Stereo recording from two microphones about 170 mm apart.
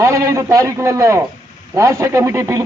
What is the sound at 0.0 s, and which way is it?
A man's voice, 20° right (ahead or behind).